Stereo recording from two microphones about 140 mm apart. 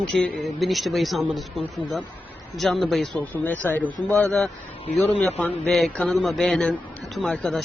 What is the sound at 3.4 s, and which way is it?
A man's voice, 15° left (ahead or behind).